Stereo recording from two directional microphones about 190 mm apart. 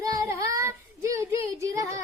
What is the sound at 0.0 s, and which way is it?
Child singing, 15° right (ahead or behind).